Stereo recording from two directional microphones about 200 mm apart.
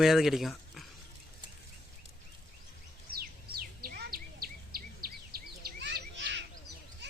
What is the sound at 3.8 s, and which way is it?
Bird vocalization, 50° right (ahead or behind).